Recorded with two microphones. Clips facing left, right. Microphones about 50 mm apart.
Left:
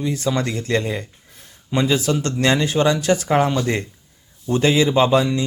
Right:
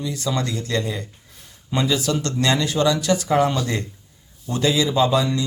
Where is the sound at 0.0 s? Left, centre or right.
Left.